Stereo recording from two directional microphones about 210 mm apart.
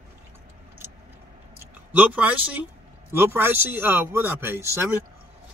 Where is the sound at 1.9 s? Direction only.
5° right (ahead or behind).